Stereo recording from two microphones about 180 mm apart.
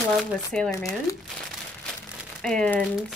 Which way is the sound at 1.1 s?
20° left (ahead or behind).